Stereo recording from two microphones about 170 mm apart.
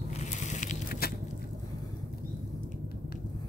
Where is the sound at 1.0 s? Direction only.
65° left (ahead or behind).